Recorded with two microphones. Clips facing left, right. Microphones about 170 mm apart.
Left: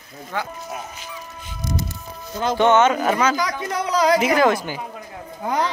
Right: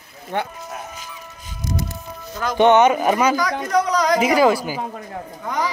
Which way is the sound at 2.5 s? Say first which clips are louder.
Right 3 dB; 15° right (ahead or behind).